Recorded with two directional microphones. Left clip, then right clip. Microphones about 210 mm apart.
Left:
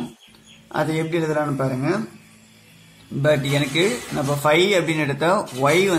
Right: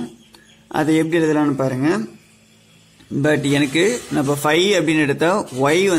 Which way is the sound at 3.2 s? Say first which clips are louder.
Right 2 dB; 40° right (ahead or behind).